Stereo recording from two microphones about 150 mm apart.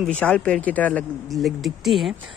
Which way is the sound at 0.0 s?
5° left (ahead or behind).